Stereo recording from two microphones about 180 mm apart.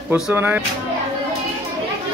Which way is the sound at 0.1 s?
10° right (ahead or behind).